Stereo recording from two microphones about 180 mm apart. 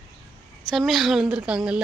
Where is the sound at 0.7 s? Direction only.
Centre (ahead or behind).